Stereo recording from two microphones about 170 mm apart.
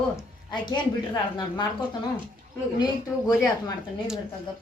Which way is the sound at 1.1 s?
25° left (ahead or behind).